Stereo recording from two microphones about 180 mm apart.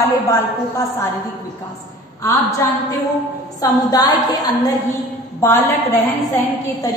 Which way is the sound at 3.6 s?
20° left (ahead or behind).